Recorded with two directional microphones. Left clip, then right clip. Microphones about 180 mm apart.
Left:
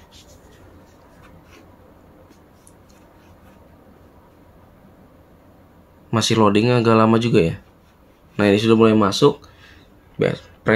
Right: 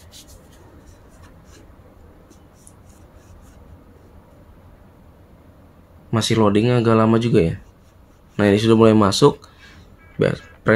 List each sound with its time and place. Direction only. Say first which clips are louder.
6.0 s speech: left 1 dB; 5° left (ahead or behind); by 9.7 s 20° right (ahead or behind)
10.1 s music: right 1 dB; 15° right (ahead or behind)